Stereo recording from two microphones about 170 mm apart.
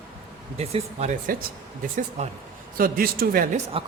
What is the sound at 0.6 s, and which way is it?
Speech, 40° right (ahead or behind).